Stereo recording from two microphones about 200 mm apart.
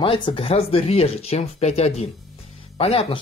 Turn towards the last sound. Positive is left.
turn(degrees=30)  # may be behind; listen again after turning